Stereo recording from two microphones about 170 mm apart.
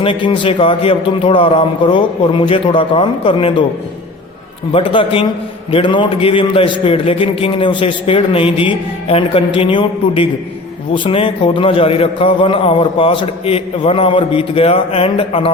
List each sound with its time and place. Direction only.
0.0 s a man's voice: 30° left (ahead or behind)
4.7 s a man's voice: 30° left (ahead or behind)